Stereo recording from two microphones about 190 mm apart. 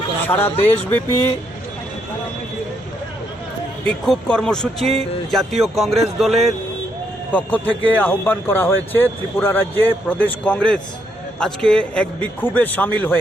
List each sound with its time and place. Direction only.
0.3 s speech: 10° left (ahead or behind)
3.8 s speech: 5° left (ahead or behind)